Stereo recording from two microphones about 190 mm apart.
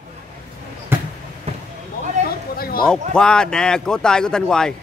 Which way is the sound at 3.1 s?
5° left (ahead or behind).